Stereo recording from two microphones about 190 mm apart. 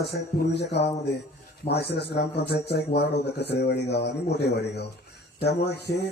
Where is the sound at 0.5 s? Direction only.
60° left (ahead or behind).